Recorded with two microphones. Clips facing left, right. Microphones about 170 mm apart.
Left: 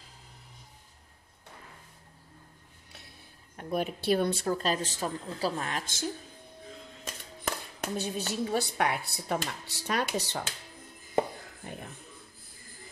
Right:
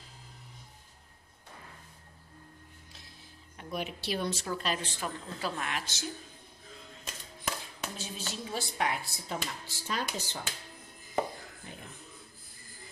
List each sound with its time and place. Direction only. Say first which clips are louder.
3.5 s speech: left 6 dB; 50° left (ahead or behind)
4.6 s a woman's voice: left 4 dB; 40° left (ahead or behind)
7.8 s speech: left 9 dB; 60° left (ahead or behind)
11.7 s music: left 7 dB; 55° left (ahead or behind)